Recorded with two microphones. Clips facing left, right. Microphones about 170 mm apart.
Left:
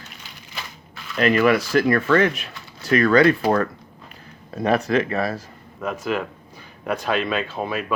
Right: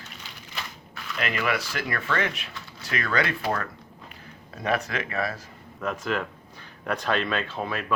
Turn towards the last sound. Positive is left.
turn(degrees=10)  # may be behind; listen again after turning